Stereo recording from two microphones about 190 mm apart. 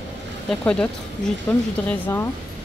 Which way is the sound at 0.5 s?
5° left (ahead or behind).